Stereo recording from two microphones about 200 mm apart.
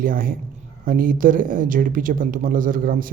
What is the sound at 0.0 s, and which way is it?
Speech, 45° right (ahead or behind).